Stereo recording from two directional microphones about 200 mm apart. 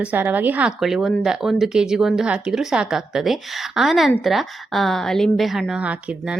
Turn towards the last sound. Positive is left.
turn(degrees=-5)  # may be behind; listen again after turning